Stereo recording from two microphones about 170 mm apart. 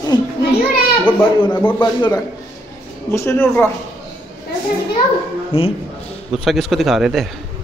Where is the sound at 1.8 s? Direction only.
25° left (ahead or behind).